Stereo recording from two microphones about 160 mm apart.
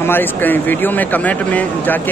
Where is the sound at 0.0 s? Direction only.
15° left (ahead or behind).